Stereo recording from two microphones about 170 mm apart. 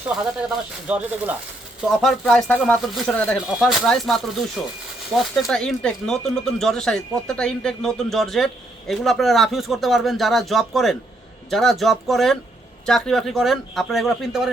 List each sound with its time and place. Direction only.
0.3 s speech: 5° right (ahead or behind)
2.0 s speech: centre (ahead or behind)